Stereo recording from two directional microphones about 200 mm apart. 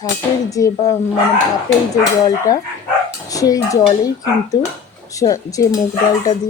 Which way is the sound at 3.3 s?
15° left (ahead or behind).